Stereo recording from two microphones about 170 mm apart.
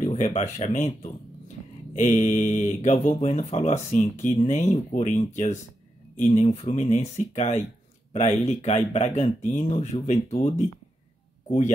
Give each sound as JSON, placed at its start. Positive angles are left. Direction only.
{"t": 0.0, "sound": "speech", "side_deg": 40}
{"t": 2.0, "sound": "speech", "side_deg": 45}